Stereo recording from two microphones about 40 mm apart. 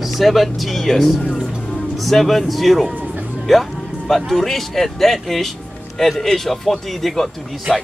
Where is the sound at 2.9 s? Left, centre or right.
Right.